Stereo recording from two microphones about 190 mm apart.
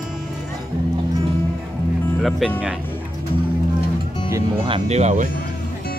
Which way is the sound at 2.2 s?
Centre (ahead or behind).